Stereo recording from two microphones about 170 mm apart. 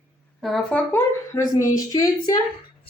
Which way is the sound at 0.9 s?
15° left (ahead or behind).